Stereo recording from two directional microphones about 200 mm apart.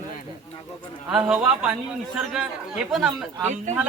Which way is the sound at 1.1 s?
5° right (ahead or behind).